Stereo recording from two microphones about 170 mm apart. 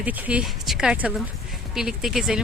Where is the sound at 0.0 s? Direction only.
10° right (ahead or behind).